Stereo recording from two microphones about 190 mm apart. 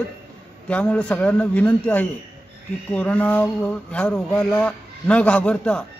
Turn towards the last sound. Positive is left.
turn(degrees=5)  # may be behind; listen again after turning